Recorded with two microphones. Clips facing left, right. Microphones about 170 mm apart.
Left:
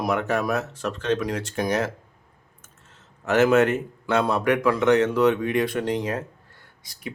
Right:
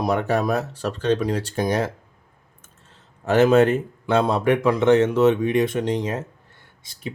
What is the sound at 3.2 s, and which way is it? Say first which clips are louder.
Speech: right 3 dB; 30° right (ahead or behind).